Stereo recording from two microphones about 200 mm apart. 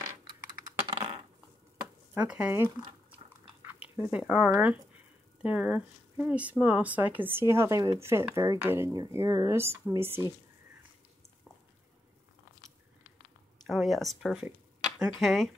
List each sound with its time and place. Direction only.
0.0 s typing: 15° right (ahead or behind)
2.1 s speech: 5° right (ahead or behind)
13.7 s speech: centre (ahead or behind)